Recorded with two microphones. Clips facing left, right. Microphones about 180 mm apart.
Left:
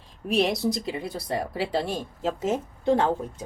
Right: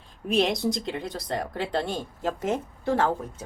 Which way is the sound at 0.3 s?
Centre (ahead or behind).